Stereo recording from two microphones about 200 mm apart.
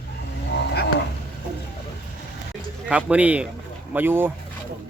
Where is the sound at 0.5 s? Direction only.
55° left (ahead or behind).